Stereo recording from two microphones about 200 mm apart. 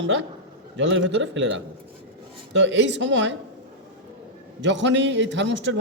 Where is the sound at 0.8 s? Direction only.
65° right (ahead or behind).